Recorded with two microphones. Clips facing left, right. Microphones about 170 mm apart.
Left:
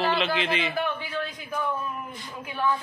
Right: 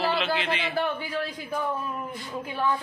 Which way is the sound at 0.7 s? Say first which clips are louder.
Right 1 dB; 35° right (ahead or behind).